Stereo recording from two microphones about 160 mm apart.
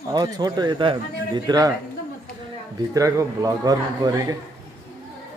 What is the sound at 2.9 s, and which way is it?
A man's voice, 20° right (ahead or behind).